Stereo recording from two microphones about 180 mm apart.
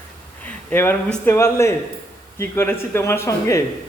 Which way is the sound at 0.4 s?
10° left (ahead or behind).